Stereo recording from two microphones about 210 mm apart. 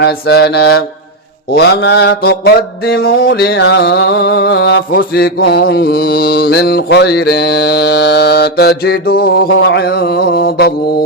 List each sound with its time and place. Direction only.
0.0 s mantra: 50° left (ahead or behind)